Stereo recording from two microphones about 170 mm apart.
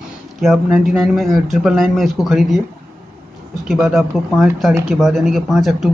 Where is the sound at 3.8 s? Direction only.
Centre (ahead or behind).